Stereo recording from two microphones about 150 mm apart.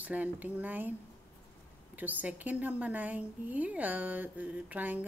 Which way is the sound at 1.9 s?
10° right (ahead or behind).